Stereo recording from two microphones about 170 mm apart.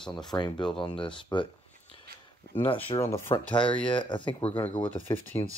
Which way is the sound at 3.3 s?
30° left (ahead or behind).